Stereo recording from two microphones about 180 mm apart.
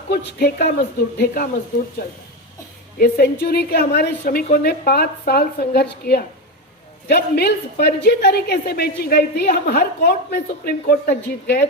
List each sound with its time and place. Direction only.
0.3 s a woman's voice: 60° left (ahead or behind)
3.0 s a woman's voice: 55° left (ahead or behind)
4.2 s a woman's voice: 50° left (ahead or behind); by 11.6 s 65° left (ahead or behind)